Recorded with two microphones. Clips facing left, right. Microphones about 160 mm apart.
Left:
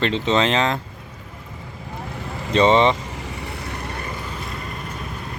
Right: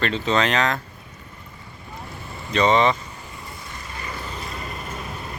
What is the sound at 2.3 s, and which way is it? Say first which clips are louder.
Boat: left 7 dB; 90° left.